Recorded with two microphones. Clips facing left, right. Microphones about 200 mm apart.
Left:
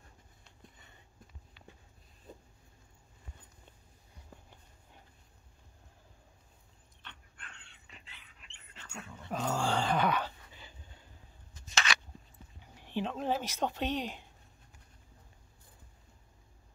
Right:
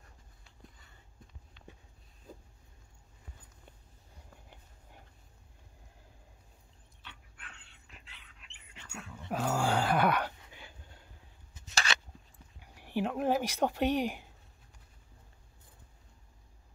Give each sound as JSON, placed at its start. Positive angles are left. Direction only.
{"t": 7.0, "sound": "dog", "side_deg": -5}
{"t": 11.7, "sound": "a sound", "side_deg": -35}
{"t": 12.7, "sound": "speech", "side_deg": -10}